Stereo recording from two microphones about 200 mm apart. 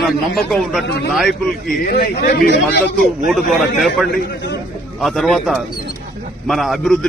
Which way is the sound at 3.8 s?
Centre (ahead or behind).